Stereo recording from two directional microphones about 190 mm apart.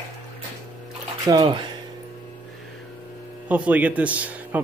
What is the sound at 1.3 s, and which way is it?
Speech, 20° right (ahead or behind).